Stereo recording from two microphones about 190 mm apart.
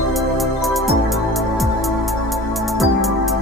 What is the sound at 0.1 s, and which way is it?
Music, centre (ahead or behind).